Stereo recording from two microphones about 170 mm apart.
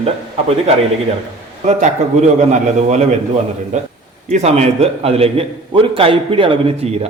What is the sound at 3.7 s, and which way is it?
A man's voice, 45° right (ahead or behind).